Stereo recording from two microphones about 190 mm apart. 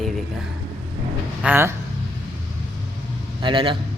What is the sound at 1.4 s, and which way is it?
Speech, 10° right (ahead or behind).